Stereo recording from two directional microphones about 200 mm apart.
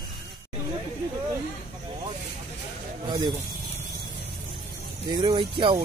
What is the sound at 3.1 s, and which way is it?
Snake, 20° right (ahead or behind).